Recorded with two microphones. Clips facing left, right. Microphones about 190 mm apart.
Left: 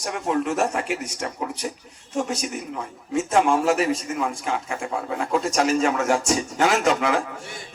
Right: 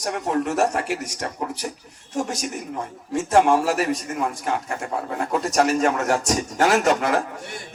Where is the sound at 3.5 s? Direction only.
45° right (ahead or behind).